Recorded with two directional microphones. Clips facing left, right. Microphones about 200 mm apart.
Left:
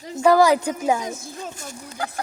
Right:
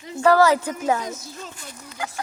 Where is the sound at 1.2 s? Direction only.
50° left (ahead or behind).